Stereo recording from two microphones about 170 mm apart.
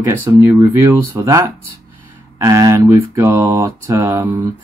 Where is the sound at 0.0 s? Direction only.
15° right (ahead or behind).